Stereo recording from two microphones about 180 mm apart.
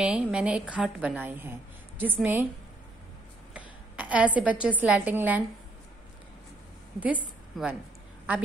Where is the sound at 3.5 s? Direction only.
5° right (ahead or behind).